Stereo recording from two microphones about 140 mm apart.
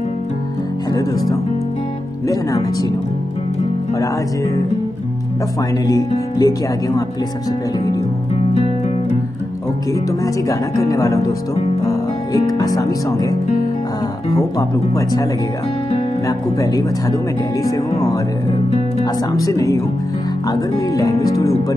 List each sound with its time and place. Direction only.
0.9 s speech: 25° left (ahead or behind)
5.9 s speech: 25° left (ahead or behind)
9.9 s speech: 25° left (ahead or behind)
16.3 s speech: 25° left (ahead or behind)
19.3 s speech: 25° left (ahead or behind)